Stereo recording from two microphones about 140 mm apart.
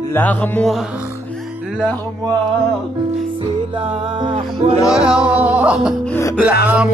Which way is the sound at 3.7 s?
35° right (ahead or behind).